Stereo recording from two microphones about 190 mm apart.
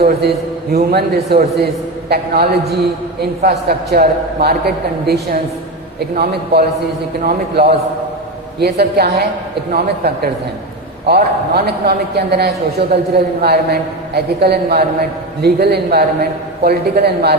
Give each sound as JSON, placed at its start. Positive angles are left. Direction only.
{"t": 0.0, "sound": "a man's voice", "side_deg": -60}